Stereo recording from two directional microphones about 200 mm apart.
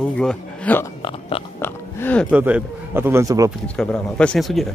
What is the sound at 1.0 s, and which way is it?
Speech, 25° left (ahead or behind).